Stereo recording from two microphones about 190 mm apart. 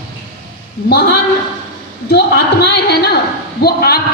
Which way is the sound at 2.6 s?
60° left (ahead or behind).